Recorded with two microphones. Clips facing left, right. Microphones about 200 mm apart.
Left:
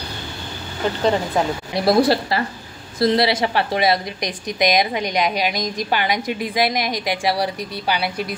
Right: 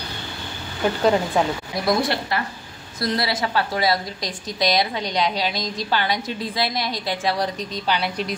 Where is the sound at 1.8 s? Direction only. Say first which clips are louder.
Left 6 dB; 30° left (ahead or behind).